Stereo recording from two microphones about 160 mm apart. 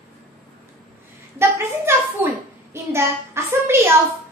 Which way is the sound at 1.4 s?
15° right (ahead or behind).